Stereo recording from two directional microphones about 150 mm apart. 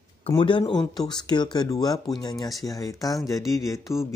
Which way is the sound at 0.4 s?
30° left (ahead or behind).